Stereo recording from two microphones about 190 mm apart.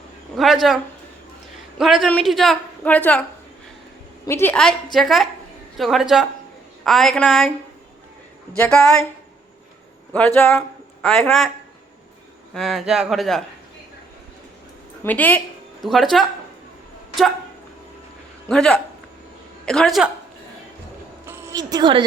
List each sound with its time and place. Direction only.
0.3 s a woman's voice: centre (ahead or behind)
1.8 s a woman's voice: centre (ahead or behind)
4.3 s a woman's voice: 10° left (ahead or behind)
8.6 s a woman's voice: 5° left (ahead or behind)
10.1 s a woman's voice: 10° left (ahead or behind)
12.5 s a woman's voice: centre (ahead or behind)
15.0 s a woman's voice: 10° left (ahead or behind)
18.4 s a woman's voice: 5° left (ahead or behind)
21.2 s a sound: 15° right (ahead or behind)